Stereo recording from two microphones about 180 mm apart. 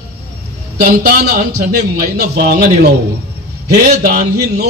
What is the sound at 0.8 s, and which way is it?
Speech, 55° right (ahead or behind).